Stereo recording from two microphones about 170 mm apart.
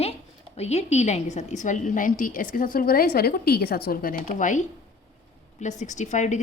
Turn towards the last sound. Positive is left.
turn(degrees=45)  # may be behind; listen again after turning